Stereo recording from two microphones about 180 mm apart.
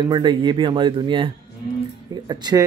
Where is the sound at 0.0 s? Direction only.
25° right (ahead or behind).